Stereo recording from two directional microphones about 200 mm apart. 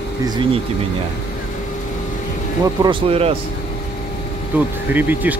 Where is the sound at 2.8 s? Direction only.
25° right (ahead or behind).